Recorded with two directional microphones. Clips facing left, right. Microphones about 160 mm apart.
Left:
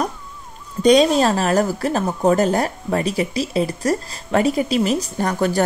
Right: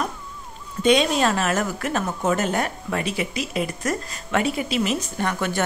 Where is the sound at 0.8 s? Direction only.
35° left (ahead or behind).